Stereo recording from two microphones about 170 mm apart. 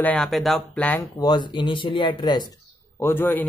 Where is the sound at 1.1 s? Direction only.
25° left (ahead or behind).